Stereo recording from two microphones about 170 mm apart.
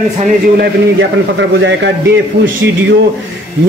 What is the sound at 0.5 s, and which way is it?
A man's voice, 90° right.